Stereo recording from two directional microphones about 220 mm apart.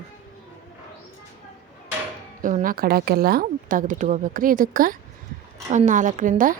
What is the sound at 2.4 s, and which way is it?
Speech, 40° right (ahead or behind).